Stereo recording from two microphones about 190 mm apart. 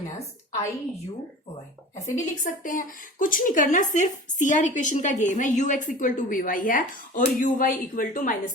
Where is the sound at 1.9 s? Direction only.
40° left (ahead or behind).